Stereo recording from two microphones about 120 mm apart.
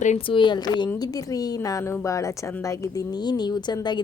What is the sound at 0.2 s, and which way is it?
A woman's voice, 45° left (ahead or behind).